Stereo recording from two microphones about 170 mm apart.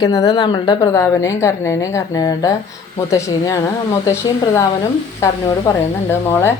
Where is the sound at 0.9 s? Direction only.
15° left (ahead or behind).